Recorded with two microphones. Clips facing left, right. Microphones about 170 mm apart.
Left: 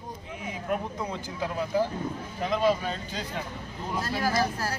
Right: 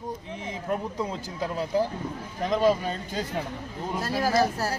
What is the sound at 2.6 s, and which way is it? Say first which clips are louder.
Speech: right 2 dB; 45° right (ahead or behind).